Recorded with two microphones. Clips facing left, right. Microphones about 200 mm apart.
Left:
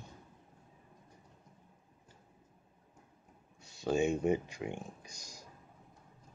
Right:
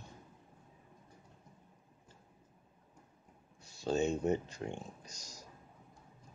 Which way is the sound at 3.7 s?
10° left (ahead or behind).